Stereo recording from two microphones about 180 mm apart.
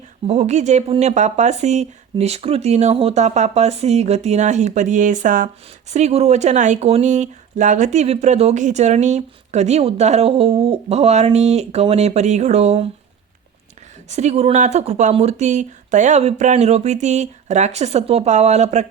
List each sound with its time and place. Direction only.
0.3 s speech: 40° right (ahead or behind)
14.1 s speech: 40° right (ahead or behind)